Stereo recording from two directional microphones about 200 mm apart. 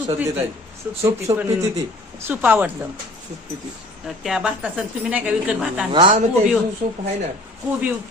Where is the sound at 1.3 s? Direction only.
25° right (ahead or behind).